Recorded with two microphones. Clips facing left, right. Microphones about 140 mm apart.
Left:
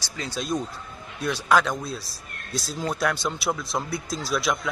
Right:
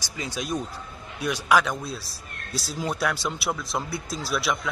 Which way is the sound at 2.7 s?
5° right (ahead or behind).